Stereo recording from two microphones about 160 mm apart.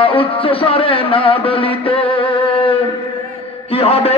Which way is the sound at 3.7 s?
40° left (ahead or behind).